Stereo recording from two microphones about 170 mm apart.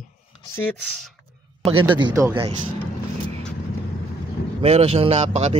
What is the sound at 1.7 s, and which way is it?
Speech, 30° right (ahead or behind).